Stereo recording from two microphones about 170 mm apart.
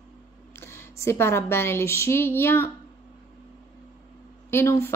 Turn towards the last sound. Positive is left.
turn(degrees=15)  # may be behind; listen again after turning